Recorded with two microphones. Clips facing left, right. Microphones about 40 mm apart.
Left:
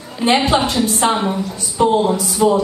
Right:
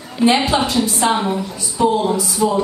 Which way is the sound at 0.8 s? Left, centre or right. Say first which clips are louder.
Left 1 dB; left.